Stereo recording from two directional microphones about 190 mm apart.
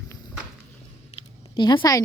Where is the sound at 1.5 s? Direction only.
25° left (ahead or behind).